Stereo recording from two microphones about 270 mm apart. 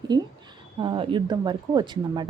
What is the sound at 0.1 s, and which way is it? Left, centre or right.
Speech, centre.